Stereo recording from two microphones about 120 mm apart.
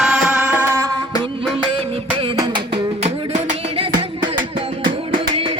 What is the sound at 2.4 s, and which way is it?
Music, 40° right (ahead or behind).